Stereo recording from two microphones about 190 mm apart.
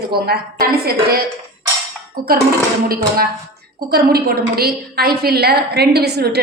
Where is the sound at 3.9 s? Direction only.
55° right (ahead or behind).